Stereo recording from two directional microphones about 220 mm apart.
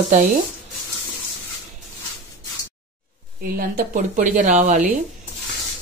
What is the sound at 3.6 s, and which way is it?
Speech, 40° right (ahead or behind).